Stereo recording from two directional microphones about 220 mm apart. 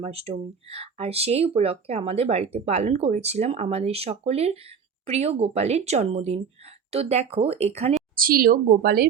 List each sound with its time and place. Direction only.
0.0 s speech: 30° right (ahead or behind)
8.1 s speech: 40° right (ahead or behind)